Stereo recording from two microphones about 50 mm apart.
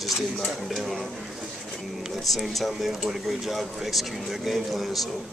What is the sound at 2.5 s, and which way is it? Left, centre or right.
Speech, centre.